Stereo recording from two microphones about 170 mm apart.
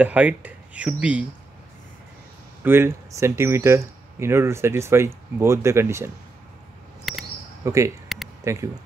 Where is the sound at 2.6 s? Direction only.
15° right (ahead or behind).